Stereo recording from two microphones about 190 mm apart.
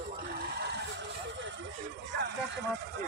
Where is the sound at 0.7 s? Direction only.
70° right (ahead or behind).